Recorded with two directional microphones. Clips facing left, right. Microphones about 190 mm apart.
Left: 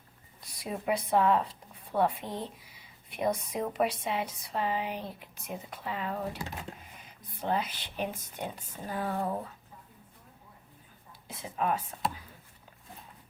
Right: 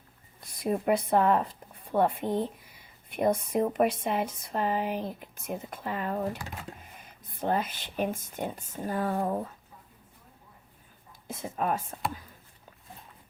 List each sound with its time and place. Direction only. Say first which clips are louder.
0.4 s speech: right 6 dB; 50° right (ahead or behind)
11.3 s speech: right 1 dB; 45° right (ahead or behind)